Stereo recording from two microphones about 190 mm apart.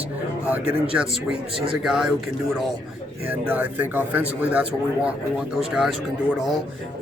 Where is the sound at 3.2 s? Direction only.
10° right (ahead or behind).